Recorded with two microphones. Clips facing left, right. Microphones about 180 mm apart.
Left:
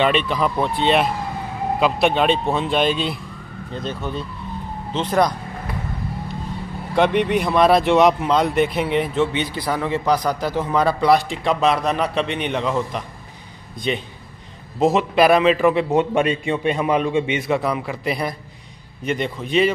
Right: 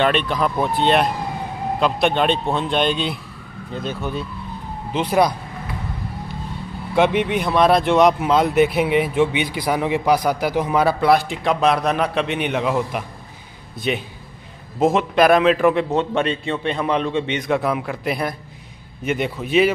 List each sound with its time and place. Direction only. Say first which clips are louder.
0.0 s speech: even; centre (ahead or behind)
7.0 s a man's voice: even; centre (ahead or behind)